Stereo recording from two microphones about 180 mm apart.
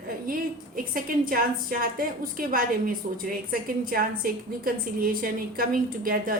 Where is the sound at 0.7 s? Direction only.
50° right (ahead or behind).